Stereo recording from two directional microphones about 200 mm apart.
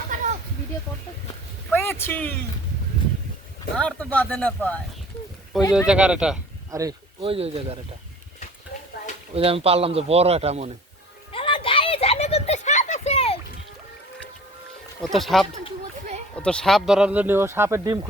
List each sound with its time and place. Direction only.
1.7 s a sound: 10° left (ahead or behind)
3.8 s speech: 5° left (ahead or behind)
6.7 s a sound: 15° right (ahead or behind)
7.3 s a man's voice: 30° right (ahead or behind)
9.3 s a man's voice: 30° right (ahead or behind)
11.3 s children playing: 25° left (ahead or behind)
15.0 s speech: centre (ahead or behind); by 18.1 s 20° right (ahead or behind)